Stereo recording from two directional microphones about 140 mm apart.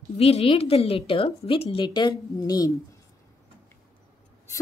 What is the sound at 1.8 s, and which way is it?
Speech, 30° left (ahead or behind).